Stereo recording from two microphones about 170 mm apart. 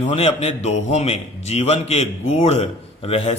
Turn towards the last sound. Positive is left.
turn(degrees=35)  # may be behind; listen again after turning